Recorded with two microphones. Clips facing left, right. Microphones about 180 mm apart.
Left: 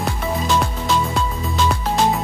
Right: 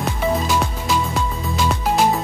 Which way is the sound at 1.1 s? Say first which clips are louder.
Left 1 dB; centre (ahead or behind).